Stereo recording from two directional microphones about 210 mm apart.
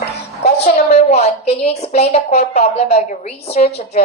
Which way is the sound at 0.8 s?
30° left (ahead or behind).